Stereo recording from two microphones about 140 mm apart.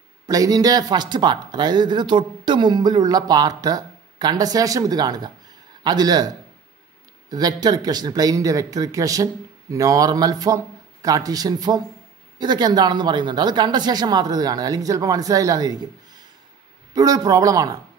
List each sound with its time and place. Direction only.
0.3 s speech: 25° right (ahead or behind)